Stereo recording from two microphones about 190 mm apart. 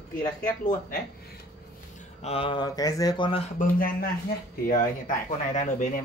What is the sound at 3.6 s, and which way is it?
A man's voice, 50° left (ahead or behind).